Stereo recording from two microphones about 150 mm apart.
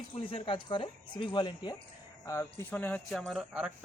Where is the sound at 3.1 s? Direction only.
Centre (ahead or behind).